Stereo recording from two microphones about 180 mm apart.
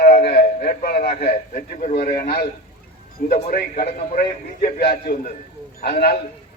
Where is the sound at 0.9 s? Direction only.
60° left (ahead or behind).